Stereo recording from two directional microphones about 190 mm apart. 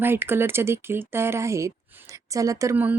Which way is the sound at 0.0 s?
10° right (ahead or behind).